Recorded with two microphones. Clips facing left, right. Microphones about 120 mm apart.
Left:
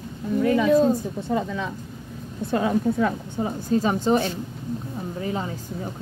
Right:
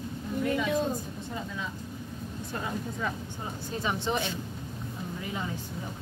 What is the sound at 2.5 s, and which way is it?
Speech, 80° left.